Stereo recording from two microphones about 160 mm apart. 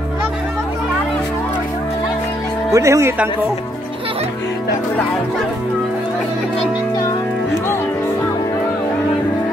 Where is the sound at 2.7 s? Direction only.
20° right (ahead or behind).